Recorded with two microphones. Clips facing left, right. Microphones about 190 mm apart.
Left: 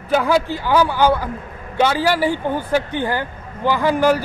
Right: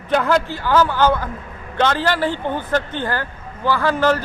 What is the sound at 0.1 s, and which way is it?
Speech, 10° left (ahead or behind).